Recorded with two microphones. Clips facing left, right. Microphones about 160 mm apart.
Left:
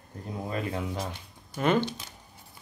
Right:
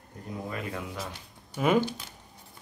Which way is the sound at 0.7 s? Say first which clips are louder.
Left 4 dB; 30° left (ahead or behind).